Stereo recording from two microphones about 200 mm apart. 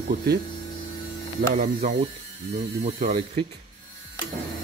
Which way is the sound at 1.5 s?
40° right (ahead or behind).